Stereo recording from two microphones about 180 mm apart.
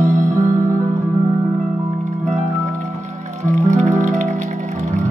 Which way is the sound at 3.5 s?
40° right (ahead or behind).